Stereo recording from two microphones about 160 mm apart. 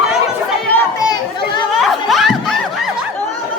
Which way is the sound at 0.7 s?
20° left (ahead or behind).